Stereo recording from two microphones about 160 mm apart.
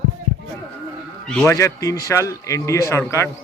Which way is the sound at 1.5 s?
20° left (ahead or behind).